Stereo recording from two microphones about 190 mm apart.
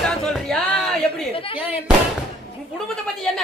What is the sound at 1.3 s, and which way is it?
Music, 30° left (ahead or behind).